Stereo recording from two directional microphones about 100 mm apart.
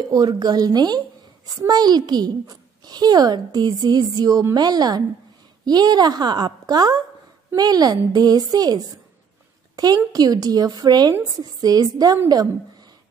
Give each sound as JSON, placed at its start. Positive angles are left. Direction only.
{"t": 0.1, "sound": "a woman's voice", "side_deg": -40}